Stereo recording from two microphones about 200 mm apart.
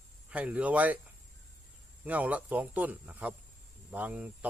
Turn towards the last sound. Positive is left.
turn(degrees=-10)  # may be behind; listen again after turning